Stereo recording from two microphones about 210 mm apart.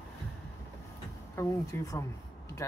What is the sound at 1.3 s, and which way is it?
Speech, 15° left (ahead or behind).